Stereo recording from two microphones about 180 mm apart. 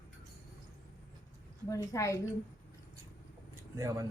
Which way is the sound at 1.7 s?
15° left (ahead or behind).